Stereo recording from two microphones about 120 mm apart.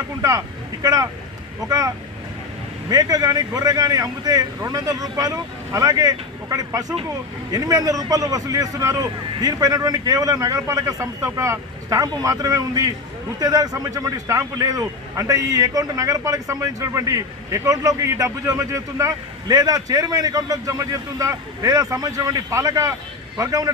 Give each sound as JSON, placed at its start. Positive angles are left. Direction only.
{"t": 1.7, "sound": "a man's voice", "side_deg": -30}